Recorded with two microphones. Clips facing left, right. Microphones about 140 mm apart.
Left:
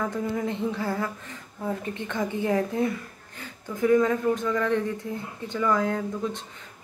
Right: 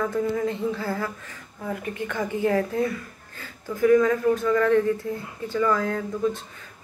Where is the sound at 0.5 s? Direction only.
15° left (ahead or behind).